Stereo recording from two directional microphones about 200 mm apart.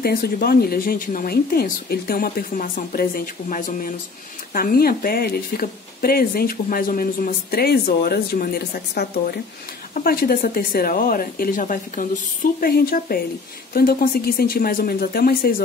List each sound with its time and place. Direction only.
0.0 s speech: 50° left (ahead or behind)